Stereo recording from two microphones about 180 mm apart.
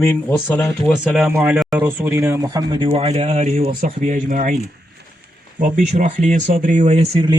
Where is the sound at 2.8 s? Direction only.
35° right (ahead or behind).